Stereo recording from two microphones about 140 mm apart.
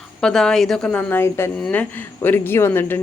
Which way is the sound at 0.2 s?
5° left (ahead or behind).